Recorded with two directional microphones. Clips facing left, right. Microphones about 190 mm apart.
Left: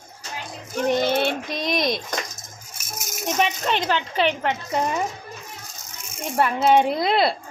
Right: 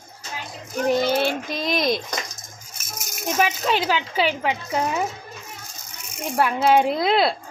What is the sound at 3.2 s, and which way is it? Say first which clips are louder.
Speech: right 1 dB; 5° right (ahead or behind).